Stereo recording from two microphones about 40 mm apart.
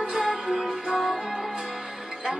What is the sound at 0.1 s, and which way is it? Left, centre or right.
Music, centre.